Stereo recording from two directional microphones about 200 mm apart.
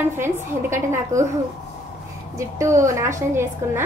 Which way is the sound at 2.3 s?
15° right (ahead or behind).